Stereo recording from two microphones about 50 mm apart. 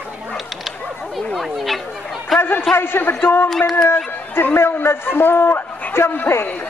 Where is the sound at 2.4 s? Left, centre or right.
Left.